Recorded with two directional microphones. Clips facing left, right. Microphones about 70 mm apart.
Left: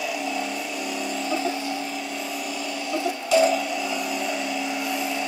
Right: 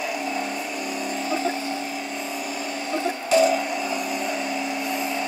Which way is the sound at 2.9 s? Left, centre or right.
Right.